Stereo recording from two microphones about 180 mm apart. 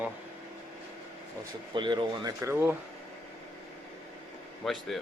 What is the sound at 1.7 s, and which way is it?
Speech, 25° right (ahead or behind).